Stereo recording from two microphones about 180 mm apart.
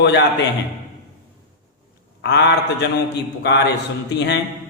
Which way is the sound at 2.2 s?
70° left (ahead or behind).